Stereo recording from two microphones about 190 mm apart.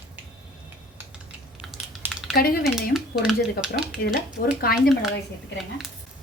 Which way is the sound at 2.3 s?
55° left (ahead or behind).